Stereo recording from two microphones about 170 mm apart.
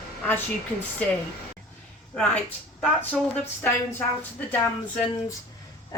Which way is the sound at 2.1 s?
5° left (ahead or behind).